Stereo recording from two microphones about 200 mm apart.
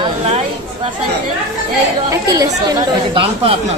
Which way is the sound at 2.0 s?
15° right (ahead or behind).